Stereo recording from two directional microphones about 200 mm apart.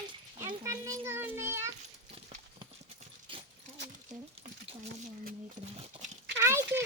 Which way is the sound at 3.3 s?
25° right (ahead or behind).